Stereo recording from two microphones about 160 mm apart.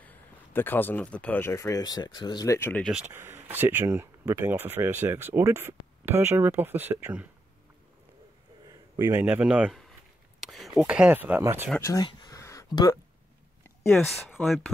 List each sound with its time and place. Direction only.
0.0 s speech: 10° left (ahead or behind)
3.1 s speech: 15° right (ahead or behind)
8.6 s speech: 20° right (ahead or behind)
10.4 s a sound: centre (ahead or behind)
10.8 s speech: 5° right (ahead or behind)
11.8 s a sound: 25° left (ahead or behind)
13.8 s speech: 5° left (ahead or behind)